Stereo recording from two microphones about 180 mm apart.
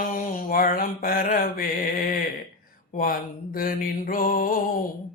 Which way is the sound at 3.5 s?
50° left (ahead or behind).